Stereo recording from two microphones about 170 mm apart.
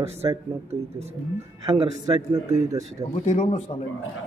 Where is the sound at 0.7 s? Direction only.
40° right (ahead or behind).